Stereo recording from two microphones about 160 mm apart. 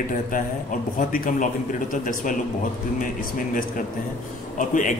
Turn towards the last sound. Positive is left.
turn(degrees=55)  # may be behind; listen again after turning